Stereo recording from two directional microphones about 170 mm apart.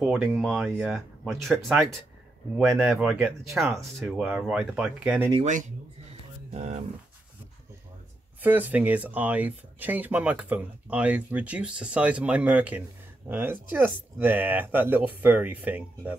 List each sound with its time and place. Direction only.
0.0 s speech: 5° right (ahead or behind)
5.4 s speech: 45° right (ahead or behind)
8.4 s speech: 10° right (ahead or behind)